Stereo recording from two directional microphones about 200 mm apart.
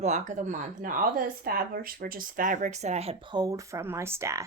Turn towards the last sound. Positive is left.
turn(degrees=-15)  # may be behind; listen again after turning